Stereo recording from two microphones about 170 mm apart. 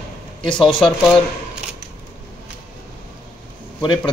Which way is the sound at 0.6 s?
30° left (ahead or behind).